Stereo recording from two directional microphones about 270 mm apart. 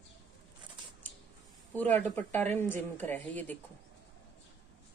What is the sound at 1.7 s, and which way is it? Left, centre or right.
A woman's voice, centre.